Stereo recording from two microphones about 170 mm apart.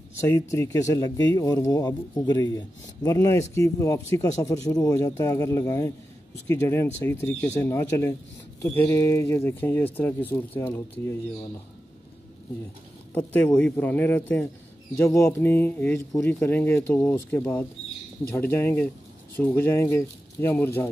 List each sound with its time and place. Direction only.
0.2 s speech: 15° left (ahead or behind)
13.3 s speech: 5° left (ahead or behind)